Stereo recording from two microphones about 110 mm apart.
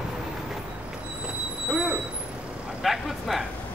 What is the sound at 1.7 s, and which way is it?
Vehicle, 5° right (ahead or behind).